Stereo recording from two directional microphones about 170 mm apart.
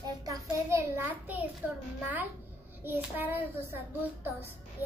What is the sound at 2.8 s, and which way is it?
Speech, 10° right (ahead or behind).